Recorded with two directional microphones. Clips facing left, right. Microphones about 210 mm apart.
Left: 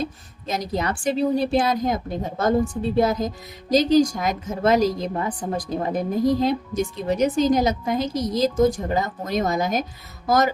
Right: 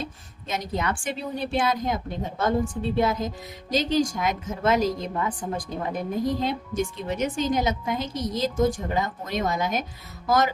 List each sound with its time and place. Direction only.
0.0 s speech: 35° left (ahead or behind)